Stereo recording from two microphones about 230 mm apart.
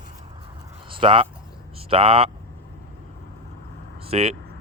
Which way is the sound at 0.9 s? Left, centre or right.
Right.